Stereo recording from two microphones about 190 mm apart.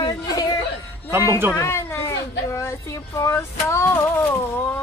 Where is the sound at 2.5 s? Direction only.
15° left (ahead or behind).